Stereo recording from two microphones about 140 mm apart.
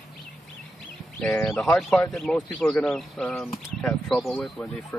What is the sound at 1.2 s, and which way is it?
Speech, 5° left (ahead or behind).